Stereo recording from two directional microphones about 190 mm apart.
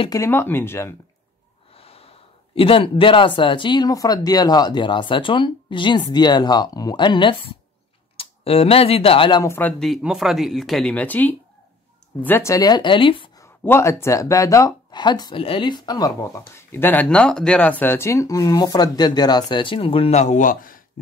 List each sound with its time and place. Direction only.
0.0 s speech: 15° left (ahead or behind)
1.7 s speech: 30° left (ahead or behind)
9.4 s speech: 10° left (ahead or behind); by 13.3 s 25° left (ahead or behind)
13.4 s a sound: 15° left (ahead or behind)
14.0 s speech: 15° left (ahead or behind); by 20.8 s 45° left (ahead or behind)